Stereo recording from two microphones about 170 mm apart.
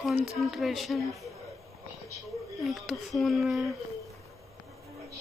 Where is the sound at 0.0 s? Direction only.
5° right (ahead or behind).